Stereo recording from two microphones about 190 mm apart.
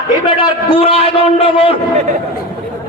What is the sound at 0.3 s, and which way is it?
A man's voice, 25° left (ahead or behind).